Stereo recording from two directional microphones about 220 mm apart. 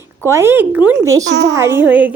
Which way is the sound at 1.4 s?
10° right (ahead or behind).